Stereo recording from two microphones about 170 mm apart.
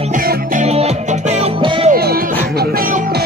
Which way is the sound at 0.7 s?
40° right (ahead or behind).